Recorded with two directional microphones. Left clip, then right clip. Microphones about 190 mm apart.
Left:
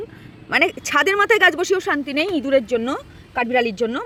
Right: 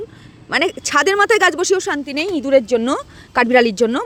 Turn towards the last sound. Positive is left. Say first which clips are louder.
# right 6 dB
turn(degrees=-30)  # may be behind; listen again after turning